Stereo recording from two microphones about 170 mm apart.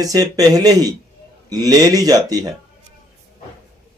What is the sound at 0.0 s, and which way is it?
Speech, 20° right (ahead or behind).